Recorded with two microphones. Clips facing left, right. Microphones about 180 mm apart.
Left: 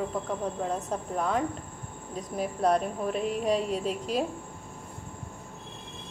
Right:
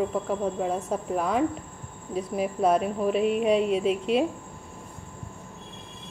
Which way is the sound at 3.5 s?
35° left (ahead or behind).